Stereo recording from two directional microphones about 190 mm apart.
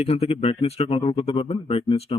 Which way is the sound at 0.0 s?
30° left (ahead or behind).